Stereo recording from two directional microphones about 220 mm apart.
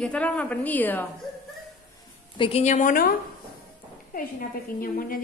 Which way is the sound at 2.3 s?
25° left (ahead or behind).